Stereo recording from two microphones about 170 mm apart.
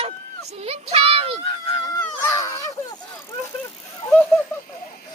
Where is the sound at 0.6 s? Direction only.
35° right (ahead or behind).